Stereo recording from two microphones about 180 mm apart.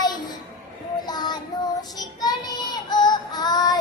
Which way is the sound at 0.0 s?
25° left (ahead or behind).